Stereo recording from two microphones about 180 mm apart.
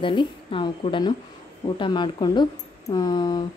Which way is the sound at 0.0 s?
25° left (ahead or behind).